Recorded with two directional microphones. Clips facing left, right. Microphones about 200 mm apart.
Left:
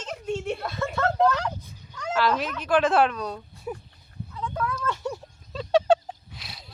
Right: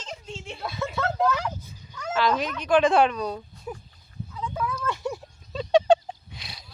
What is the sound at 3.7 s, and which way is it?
Dog, 5° left (ahead or behind).